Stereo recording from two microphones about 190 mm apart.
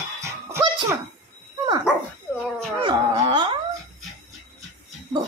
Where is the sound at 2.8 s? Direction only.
25° right (ahead or behind).